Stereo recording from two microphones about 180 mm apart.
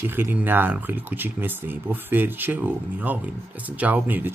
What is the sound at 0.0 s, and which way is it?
Speech, 10° right (ahead or behind).